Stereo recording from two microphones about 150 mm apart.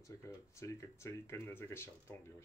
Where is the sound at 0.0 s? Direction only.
20° left (ahead or behind).